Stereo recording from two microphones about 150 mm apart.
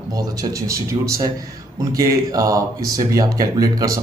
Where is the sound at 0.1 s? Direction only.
25° right (ahead or behind).